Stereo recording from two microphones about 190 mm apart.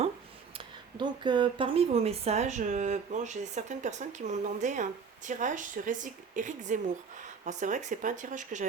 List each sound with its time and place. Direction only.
0.5 s speech: 25° right (ahead or behind); by 8.6 s 40° right (ahead or behind)